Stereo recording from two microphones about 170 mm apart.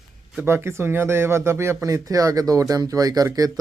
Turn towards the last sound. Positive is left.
turn(degrees=-20)  # may be behind; listen again after turning